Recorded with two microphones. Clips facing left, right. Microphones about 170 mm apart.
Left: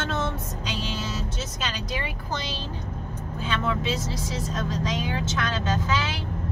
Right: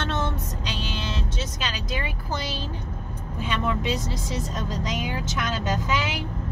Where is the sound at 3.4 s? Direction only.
15° right (ahead or behind).